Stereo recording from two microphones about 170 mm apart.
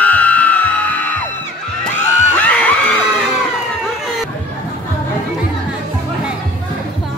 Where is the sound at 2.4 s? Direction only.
10° left (ahead or behind).